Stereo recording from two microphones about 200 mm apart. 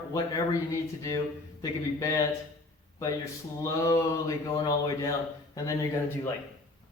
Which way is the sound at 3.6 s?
15° left (ahead or behind).